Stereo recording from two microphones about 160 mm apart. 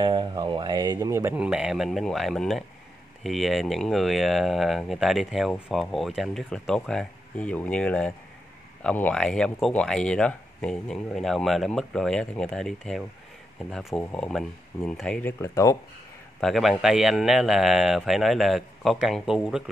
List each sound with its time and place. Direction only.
0.0 s speech: 30° right (ahead or behind); by 15.3 s 5° left (ahead or behind)
15.4 s speech: 20° left (ahead or behind)
16.3 s a man's voice: centre (ahead or behind)